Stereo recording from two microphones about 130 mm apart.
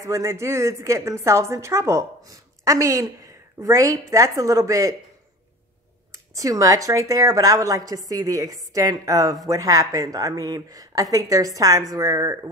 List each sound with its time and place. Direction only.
0.0 s a woman's voice: 25° right (ahead or behind)
6.1 s a woman's voice: 25° right (ahead or behind)